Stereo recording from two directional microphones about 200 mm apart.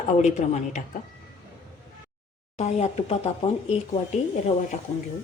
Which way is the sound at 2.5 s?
35° left (ahead or behind).